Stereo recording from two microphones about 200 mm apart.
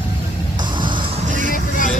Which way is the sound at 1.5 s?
45° left (ahead or behind).